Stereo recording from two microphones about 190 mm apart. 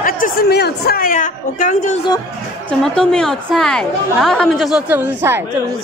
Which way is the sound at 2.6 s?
5° left (ahead or behind).